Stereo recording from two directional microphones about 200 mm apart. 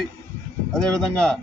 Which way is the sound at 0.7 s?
Centre (ahead or behind).